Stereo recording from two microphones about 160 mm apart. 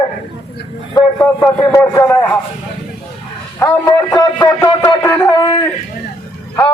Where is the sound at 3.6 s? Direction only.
25° left (ahead or behind).